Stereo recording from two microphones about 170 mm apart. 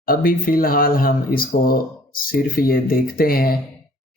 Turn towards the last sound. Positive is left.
turn(degrees=60)  # may be behind; listen again after turning